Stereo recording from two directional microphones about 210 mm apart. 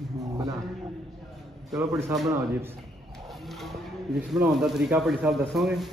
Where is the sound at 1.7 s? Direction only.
15° right (ahead or behind).